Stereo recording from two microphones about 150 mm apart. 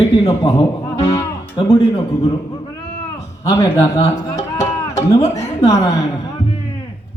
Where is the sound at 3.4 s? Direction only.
25° left (ahead or behind).